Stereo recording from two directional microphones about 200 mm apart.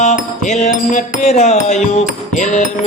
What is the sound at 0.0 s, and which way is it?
Music, 35° left (ahead or behind).